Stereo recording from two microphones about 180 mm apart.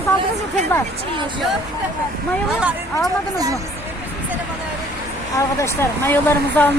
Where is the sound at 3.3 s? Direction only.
20° right (ahead or behind).